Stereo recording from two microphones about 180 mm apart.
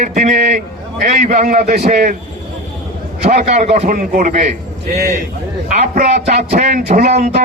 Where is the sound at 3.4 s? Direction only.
40° right (ahead or behind).